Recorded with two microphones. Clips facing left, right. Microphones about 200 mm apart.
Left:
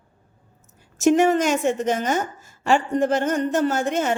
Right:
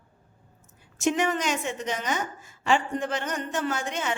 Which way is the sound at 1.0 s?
45° left (ahead or behind).